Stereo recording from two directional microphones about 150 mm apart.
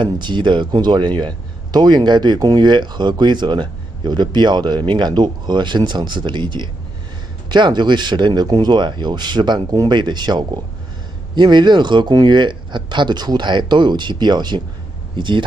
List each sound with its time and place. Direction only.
0.0 s speech: 30° right (ahead or behind)